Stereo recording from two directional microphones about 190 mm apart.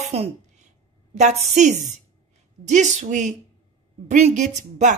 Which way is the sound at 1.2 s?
35° right (ahead or behind).